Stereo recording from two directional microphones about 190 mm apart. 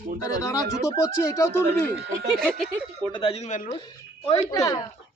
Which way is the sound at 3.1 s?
30° left (ahead or behind).